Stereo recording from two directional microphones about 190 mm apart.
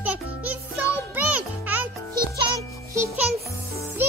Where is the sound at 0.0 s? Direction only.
10° right (ahead or behind).